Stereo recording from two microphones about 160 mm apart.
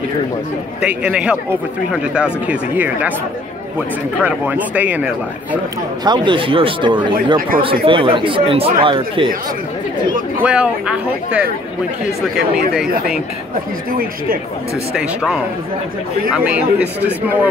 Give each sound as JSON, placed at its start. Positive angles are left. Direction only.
{"t": 0.7, "sound": "speech", "side_deg": -5}
{"t": 4.2, "sound": "speech", "side_deg": -10}
{"t": 6.0, "sound": "speech", "side_deg": -30}
{"t": 7.3, "sound": "speech", "side_deg": -60}
{"t": 7.8, "sound": "speech", "side_deg": -35}
{"t": 10.4, "sound": "speech", "side_deg": -5}
{"t": 15.0, "sound": "speech", "side_deg": -5}